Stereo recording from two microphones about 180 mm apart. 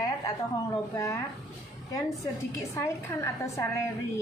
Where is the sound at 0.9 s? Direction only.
15° left (ahead or behind).